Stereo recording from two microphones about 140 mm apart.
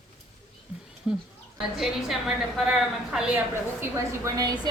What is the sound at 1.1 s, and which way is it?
Speech, 5° right (ahead or behind).